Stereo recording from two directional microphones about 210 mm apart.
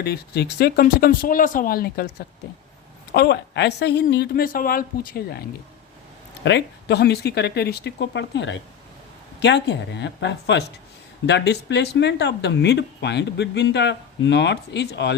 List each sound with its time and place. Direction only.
0.0 s a woman's voice: 50° left (ahead or behind)
3.1 s a woman's voice: 50° left (ahead or behind)
6.4 s a woman's voice: 55° left (ahead or behind)